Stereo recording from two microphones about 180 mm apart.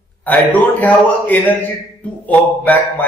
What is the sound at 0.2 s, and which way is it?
A man's voice, 10° left (ahead or behind).